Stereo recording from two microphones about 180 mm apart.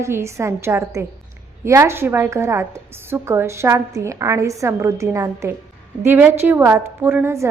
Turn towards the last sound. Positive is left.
turn(degrees=-15)  # may be behind; listen again after turning